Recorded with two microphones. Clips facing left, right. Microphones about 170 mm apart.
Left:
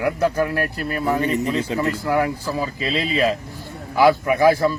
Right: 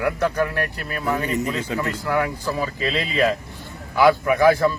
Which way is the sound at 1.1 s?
35° left (ahead or behind).